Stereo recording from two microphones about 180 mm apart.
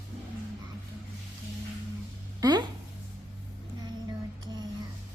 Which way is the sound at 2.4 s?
20° right (ahead or behind).